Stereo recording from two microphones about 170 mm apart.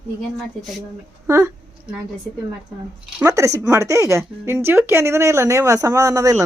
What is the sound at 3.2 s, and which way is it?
Speech, 20° right (ahead or behind).